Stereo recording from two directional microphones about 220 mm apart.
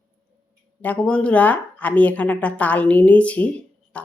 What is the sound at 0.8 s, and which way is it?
A woman's voice, 5° left (ahead or behind).